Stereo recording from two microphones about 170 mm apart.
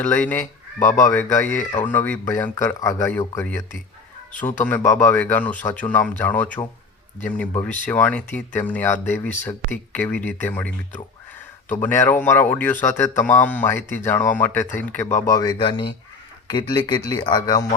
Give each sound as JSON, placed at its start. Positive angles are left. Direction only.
{"t": 0.1, "sound": "speech", "side_deg": 10}
{"t": 0.8, "sound": "speech", "side_deg": 45}
{"t": 1.1, "sound": "speech", "side_deg": 10}